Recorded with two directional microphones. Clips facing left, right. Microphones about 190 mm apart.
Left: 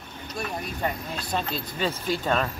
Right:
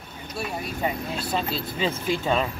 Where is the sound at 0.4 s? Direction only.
5° right (ahead or behind).